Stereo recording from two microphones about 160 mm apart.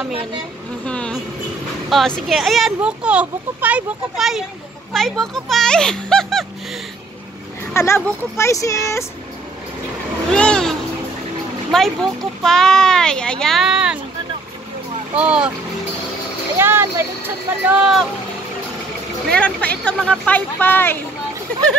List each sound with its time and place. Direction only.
0.8 s vehicle: 5° left (ahead or behind)
1.9 s speech: 5° left (ahead or behind)
7.7 s speech: 15° left (ahead or behind)
10.3 s a sound: 5° left (ahead or behind)
11.7 s speech: centre (ahead or behind)
15.1 s speech: 5° right (ahead or behind)
16.5 s speech: 15° right (ahead or behind)
19.3 s speech: 10° left (ahead or behind)